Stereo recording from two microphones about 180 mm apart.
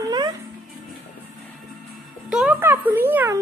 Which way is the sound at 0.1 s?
20° right (ahead or behind).